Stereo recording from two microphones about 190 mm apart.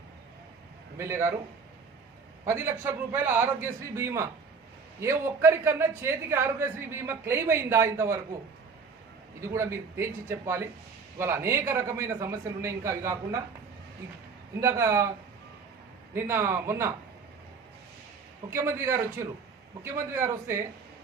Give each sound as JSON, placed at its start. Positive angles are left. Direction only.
{"t": 0.9, "sound": "a man's voice", "side_deg": -15}
{"t": 2.4, "sound": "a man's voice", "side_deg": -15}
{"t": 9.4, "sound": "a man's voice", "side_deg": -15}
{"t": 14.6, "sound": "a man's voice", "side_deg": -15}
{"t": 16.1, "sound": "a man's voice", "side_deg": -15}
{"t": 18.5, "sound": "a man's voice", "side_deg": -15}